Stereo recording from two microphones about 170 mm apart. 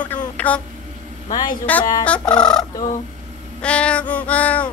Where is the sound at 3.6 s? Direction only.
5° left (ahead or behind).